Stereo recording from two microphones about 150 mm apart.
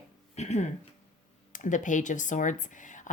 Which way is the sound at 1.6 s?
55° left (ahead or behind).